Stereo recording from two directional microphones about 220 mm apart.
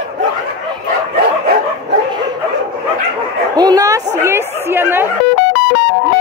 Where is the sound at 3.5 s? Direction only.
15° right (ahead or behind).